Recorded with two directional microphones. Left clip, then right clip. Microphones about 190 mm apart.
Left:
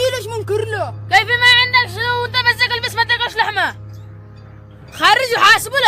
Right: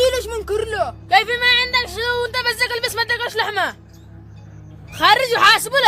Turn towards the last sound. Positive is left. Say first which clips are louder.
# left 2 dB
turn(degrees=-5)  # may be behind; listen again after turning